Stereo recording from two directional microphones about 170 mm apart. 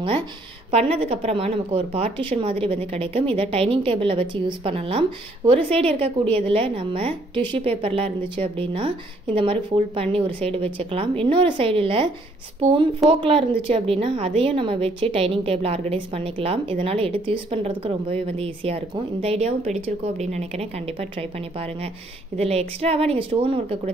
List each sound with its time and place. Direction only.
0.7 s a woman's voice: 35° right (ahead or behind)
13.1 s a woman's voice: 30° right (ahead or behind)